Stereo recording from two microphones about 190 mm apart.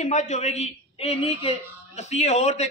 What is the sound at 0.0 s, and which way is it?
A woman's voice, 35° left (ahead or behind).